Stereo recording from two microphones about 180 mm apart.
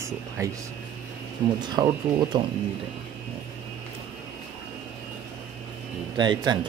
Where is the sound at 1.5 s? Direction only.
25° right (ahead or behind).